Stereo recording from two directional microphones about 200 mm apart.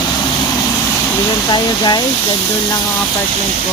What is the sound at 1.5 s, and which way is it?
Speech, 20° left (ahead or behind).